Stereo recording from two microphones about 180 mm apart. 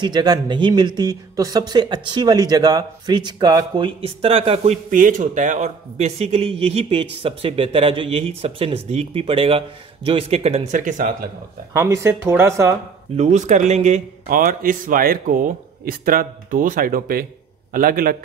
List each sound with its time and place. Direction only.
0.0 s speech: 25° right (ahead or behind)
4.9 s speech: 45° right (ahead or behind)
11.7 s speech: 15° right (ahead or behind)
13.1 s speech: 40° right (ahead or behind)